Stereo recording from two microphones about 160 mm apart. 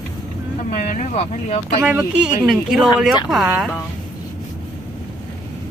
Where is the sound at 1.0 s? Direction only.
40° left (ahead or behind).